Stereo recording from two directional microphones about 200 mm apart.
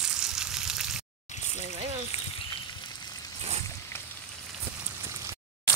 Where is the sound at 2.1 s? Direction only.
30° left (ahead or behind).